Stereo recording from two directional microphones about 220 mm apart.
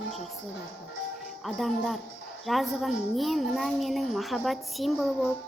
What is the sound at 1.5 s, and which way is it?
A child's voice, centre (ahead or behind).